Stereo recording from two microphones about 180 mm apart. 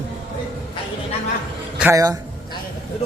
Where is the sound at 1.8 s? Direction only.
15° right (ahead or behind).